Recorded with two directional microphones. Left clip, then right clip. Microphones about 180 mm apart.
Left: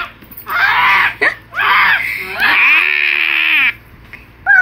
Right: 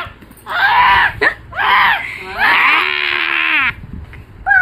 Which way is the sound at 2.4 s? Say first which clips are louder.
Left 1 dB; 50° right (ahead or behind).